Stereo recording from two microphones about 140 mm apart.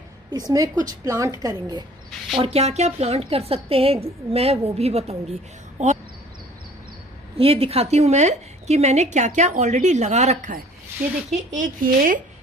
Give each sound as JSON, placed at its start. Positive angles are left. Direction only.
{"t": 0.3, "sound": "a woman's voice", "side_deg": -25}
{"t": 2.3, "sound": "a woman's voice", "side_deg": -45}
{"t": 7.3, "sound": "a woman's voice", "side_deg": -45}